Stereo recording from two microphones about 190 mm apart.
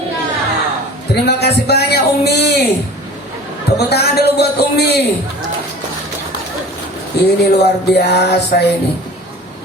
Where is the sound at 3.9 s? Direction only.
60° left (ahead or behind).